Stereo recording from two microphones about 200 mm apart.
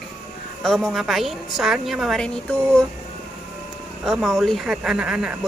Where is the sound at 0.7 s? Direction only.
Centre (ahead or behind).